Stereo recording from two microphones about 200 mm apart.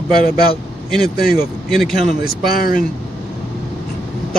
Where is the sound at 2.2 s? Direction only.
50° left (ahead or behind).